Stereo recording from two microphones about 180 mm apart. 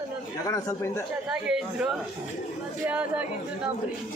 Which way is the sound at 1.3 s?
5° right (ahead or behind).